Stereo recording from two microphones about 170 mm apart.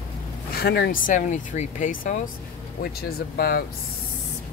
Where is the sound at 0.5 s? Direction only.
70° left (ahead or behind); by 2.1 s 50° left (ahead or behind).